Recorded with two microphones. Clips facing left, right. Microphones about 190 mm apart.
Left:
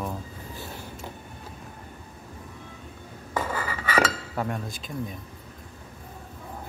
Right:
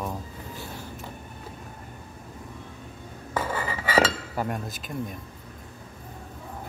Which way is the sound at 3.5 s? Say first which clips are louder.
Right 3 dB; 20° right (ahead or behind).